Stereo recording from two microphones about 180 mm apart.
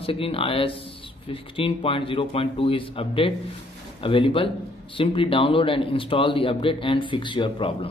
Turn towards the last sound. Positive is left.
turn(degrees=25)  # may be behind; listen again after turning